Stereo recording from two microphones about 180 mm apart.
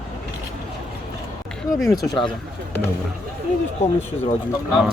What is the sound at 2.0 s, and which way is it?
Speech, 25° left (ahead or behind).